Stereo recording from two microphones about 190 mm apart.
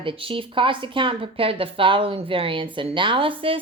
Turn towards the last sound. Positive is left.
turn(degrees=-25)  # may be behind; listen again after turning